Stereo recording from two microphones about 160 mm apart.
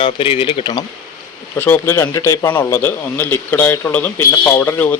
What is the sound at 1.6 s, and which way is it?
A man's voice, 15° left (ahead or behind).